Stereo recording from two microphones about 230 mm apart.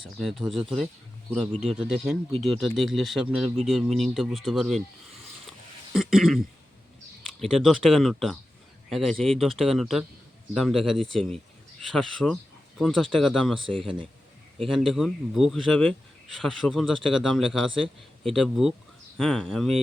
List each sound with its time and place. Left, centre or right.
0.2 s speech: centre
1.9 s speech: centre
5.5 s a sound: centre
7.5 s speech: centre
13.7 s speech: right
14.8 s speech: centre